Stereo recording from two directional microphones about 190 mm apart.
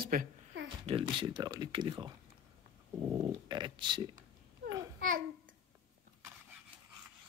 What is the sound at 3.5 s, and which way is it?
Speech, 25° right (ahead or behind).